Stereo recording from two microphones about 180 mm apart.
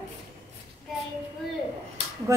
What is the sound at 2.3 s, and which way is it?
Speech, 15° right (ahead or behind).